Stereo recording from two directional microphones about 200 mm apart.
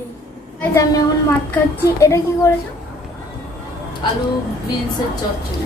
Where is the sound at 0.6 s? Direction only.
15° left (ahead or behind).